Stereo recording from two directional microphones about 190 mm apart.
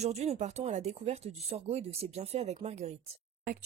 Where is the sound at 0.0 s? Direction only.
35° right (ahead or behind).